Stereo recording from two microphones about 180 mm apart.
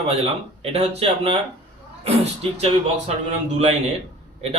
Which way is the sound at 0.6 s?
35° right (ahead or behind).